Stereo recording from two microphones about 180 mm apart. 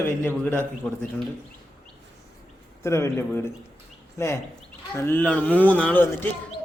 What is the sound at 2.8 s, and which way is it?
A man's voice, 15° left (ahead or behind).